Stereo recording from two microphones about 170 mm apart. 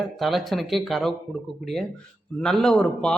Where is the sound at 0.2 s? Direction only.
Centre (ahead or behind).